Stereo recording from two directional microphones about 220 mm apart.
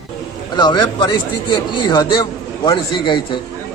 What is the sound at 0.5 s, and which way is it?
A man's voice, 20° left (ahead or behind).